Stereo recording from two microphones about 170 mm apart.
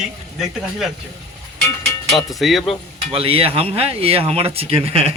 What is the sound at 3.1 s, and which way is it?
Speech, 35° right (ahead or behind).